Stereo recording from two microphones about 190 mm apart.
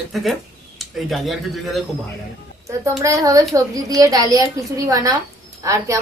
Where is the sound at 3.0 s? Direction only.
15° right (ahead or behind).